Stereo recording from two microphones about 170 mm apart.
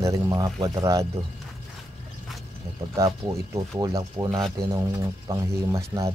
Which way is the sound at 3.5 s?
20° right (ahead or behind).